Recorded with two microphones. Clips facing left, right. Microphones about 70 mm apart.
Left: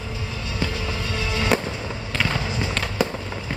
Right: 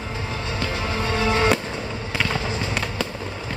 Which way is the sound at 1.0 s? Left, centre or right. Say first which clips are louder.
Right 8 dB; right.